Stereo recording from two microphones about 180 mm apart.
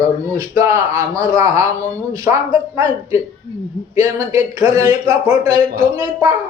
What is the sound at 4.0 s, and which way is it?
Speech, 15° right (ahead or behind).